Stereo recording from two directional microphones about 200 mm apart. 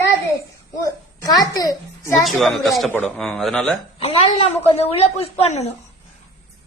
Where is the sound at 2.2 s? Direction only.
Centre (ahead or behind).